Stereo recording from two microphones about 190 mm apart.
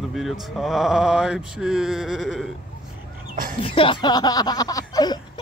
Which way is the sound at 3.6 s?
25° left (ahead or behind).